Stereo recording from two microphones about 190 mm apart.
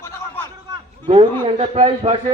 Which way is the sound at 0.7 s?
30° right (ahead or behind).